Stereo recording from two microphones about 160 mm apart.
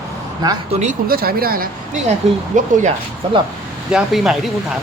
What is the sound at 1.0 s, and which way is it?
Speech, 70° right (ahead or behind).